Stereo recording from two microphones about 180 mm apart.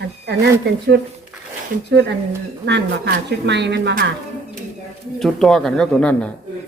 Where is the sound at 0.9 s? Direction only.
75° right (ahead or behind).